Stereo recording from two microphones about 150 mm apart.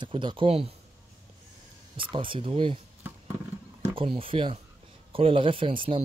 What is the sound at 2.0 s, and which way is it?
Speech, 35° right (ahead or behind).